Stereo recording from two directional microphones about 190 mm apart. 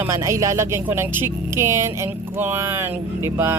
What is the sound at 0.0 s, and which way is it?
Speech, 15° right (ahead or behind).